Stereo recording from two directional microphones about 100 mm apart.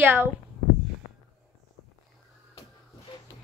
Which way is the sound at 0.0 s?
20° right (ahead or behind).